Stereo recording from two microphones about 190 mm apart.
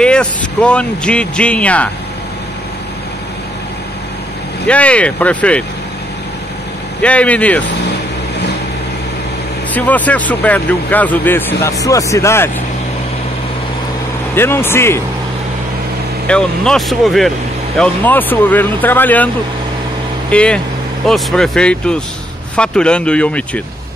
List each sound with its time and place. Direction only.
0.0 s speech: 5° left (ahead or behind)
4.6 s speech: 5° left (ahead or behind)
7.0 s speech: 5° left (ahead or behind)
9.8 s speech: 10° left (ahead or behind)
14.3 s speech: 10° left (ahead or behind)
16.3 s speech: 5° left (ahead or behind)